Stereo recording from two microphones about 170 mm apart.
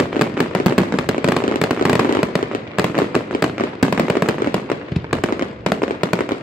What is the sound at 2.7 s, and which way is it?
Fireworks, centre (ahead or behind).